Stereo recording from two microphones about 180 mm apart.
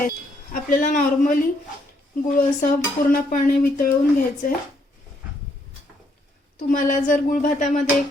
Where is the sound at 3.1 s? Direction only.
50° left (ahead or behind).